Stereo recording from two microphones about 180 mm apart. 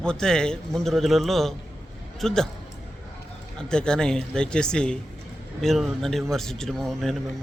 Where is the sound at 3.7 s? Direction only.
5° left (ahead or behind).